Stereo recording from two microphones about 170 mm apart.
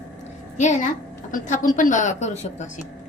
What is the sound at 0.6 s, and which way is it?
A woman's voice, 45° left (ahead or behind).